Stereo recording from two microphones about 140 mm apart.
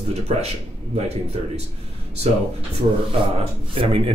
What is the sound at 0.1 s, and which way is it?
Speech, 50° right (ahead or behind).